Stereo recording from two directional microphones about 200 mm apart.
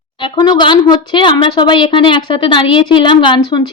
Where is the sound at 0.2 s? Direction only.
20° left (ahead or behind).